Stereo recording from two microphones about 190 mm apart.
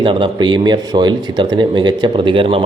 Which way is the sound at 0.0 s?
25° right (ahead or behind).